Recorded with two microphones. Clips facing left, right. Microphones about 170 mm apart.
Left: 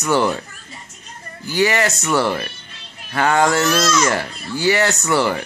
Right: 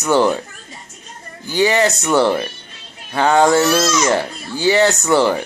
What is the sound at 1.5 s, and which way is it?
Speech, 20° right (ahead or behind).